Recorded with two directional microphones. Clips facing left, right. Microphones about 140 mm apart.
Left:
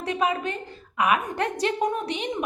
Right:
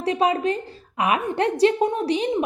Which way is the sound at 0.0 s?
35° right (ahead or behind).